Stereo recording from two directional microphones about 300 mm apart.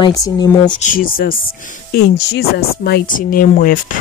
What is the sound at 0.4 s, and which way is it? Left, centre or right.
Speech, centre.